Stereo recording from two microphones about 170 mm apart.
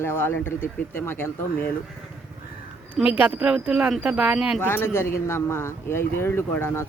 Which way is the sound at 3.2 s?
10° right (ahead or behind).